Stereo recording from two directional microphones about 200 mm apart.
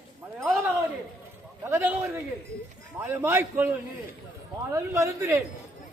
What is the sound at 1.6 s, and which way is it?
A man's voice, 15° right (ahead or behind).